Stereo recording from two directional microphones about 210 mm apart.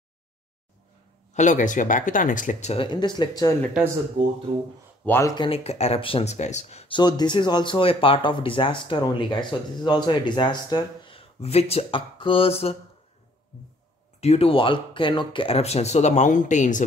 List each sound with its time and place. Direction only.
1.3 s speech: 35° left (ahead or behind); by 3.5 s 20° left (ahead or behind)
5.0 s speech: 10° left (ahead or behind)
5.3 s speech: 25° left (ahead or behind)
14.2 s speech: 30° left (ahead or behind)